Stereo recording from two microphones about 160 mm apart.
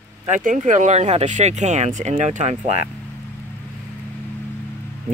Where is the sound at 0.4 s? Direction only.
55° right (ahead or behind).